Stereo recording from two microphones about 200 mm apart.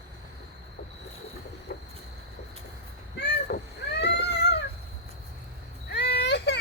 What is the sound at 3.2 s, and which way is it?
Vehicle, 60° left (ahead or behind).